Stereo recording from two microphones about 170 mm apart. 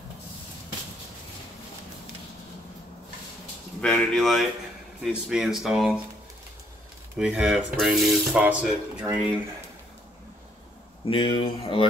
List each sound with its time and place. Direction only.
3.8 s speech: 5° left (ahead or behind)
7.2 s speech: 5° right (ahead or behind)
11.1 s speech: 30° left (ahead or behind)